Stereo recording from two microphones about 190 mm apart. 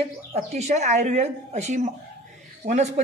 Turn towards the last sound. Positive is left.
turn(degrees=-35)  # may be behind; listen again after turning